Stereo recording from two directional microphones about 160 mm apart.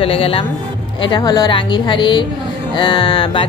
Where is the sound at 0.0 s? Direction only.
35° left (ahead or behind).